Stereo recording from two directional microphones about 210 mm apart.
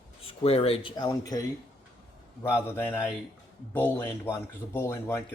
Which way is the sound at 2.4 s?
10° left (ahead or behind).